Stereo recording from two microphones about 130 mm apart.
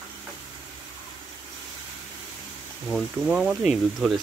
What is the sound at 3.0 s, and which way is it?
Speech, 5° right (ahead or behind).